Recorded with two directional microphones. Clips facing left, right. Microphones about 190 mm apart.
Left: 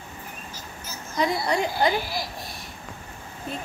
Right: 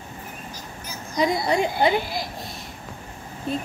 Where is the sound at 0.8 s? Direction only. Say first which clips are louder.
Right 3 dB; 15° right (ahead or behind).